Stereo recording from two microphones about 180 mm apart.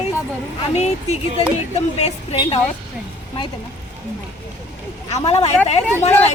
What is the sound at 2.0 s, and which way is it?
Speech, 30° left (ahead or behind).